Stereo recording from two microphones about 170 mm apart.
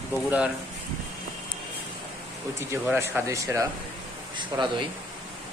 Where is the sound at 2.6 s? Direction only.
15° right (ahead or behind).